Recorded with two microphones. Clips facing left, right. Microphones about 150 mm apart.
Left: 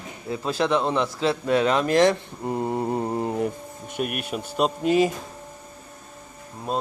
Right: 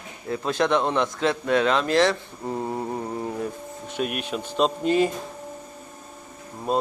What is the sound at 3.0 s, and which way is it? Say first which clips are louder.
Mantra: left 4 dB; 35° left (ahead or behind).